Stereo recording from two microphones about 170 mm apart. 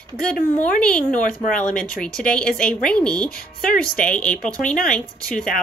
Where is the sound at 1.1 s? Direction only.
50° left (ahead or behind).